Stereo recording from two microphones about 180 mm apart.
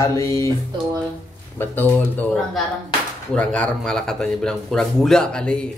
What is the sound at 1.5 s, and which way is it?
Speech, 10° left (ahead or behind).